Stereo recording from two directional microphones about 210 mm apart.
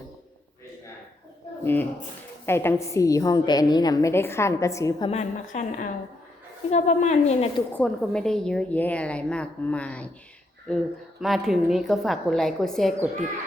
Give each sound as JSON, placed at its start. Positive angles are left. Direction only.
{"t": 1.6, "sound": "a woman's voice", "side_deg": 10}
{"t": 5.1, "sound": "a woman's voice", "side_deg": 35}
{"t": 7.8, "sound": "a woman's voice", "side_deg": 5}
{"t": 11.2, "sound": "a woman's voice", "side_deg": 0}